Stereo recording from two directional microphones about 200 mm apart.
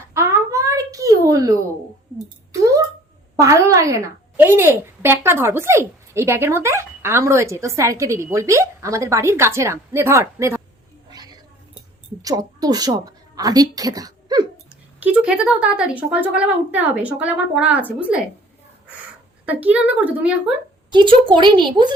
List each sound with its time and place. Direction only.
0.1 s a sound: 15° right (ahead or behind)
3.3 s a woman's voice: 15° right (ahead or behind)
11.1 s a sound: 20° right (ahead or behind)
12.2 s a woman's voice: 20° right (ahead or behind)
15.0 s a woman's voice: 5° right (ahead or behind)
19.5 s a woman's voice: 10° right (ahead or behind)
20.9 s a woman's voice: 25° right (ahead or behind)